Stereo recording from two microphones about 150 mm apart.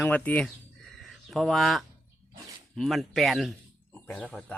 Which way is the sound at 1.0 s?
Centre (ahead or behind).